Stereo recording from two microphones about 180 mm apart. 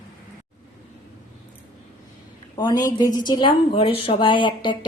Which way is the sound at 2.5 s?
25° left (ahead or behind).